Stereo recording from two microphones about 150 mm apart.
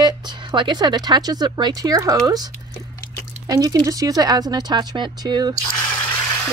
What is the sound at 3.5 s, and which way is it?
Speech, 25° right (ahead or behind).